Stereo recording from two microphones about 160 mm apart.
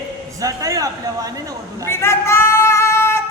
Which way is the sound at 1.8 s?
15° left (ahead or behind).